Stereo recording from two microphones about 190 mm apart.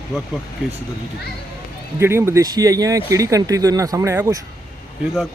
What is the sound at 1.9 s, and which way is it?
Speech, 15° right (ahead or behind).